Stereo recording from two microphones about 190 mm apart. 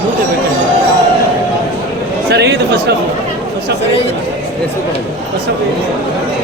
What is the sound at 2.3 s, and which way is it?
Speech, 60° right (ahead or behind).